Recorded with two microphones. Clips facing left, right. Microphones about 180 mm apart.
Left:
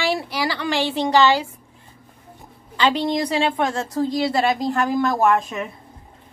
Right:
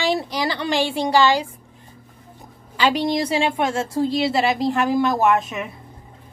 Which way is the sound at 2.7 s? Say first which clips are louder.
Even; 10° right (ahead or behind).